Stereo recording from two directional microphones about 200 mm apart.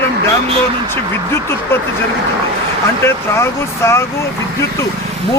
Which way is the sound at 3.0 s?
15° left (ahead or behind).